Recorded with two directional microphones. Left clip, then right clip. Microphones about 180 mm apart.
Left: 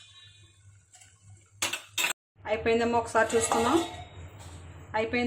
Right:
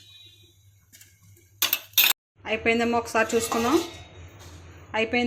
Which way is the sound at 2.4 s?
15° right (ahead or behind).